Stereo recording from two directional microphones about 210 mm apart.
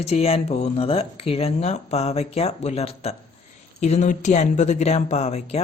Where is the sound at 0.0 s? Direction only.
30° left (ahead or behind).